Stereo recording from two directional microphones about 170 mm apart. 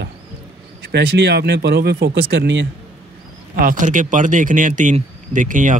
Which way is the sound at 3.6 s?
50° right (ahead or behind).